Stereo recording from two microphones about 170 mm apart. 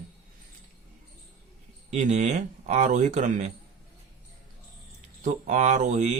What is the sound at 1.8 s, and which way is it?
Speech, 40° right (ahead or behind).